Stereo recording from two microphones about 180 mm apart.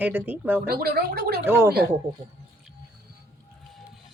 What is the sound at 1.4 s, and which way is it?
Speech, 15° right (ahead or behind).